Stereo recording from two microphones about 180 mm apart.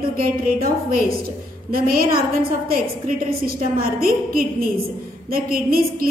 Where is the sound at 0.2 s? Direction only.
50° right (ahead or behind).